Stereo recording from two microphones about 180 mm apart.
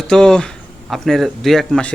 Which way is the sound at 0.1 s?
5° left (ahead or behind).